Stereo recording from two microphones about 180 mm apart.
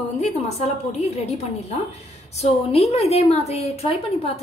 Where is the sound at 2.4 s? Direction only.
35° left (ahead or behind).